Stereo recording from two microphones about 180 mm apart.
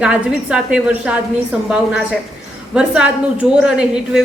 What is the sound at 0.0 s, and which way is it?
A woman's voice, 5° right (ahead or behind).